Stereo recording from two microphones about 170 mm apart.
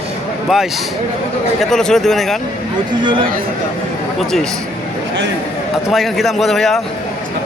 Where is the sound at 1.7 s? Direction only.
5° left (ahead or behind).